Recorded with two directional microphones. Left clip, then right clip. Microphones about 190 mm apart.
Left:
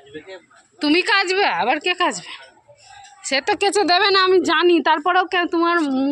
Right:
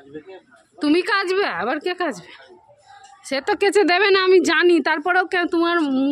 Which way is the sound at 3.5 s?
35° right (ahead or behind).